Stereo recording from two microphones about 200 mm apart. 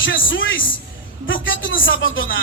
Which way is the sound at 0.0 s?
70° left (ahead or behind).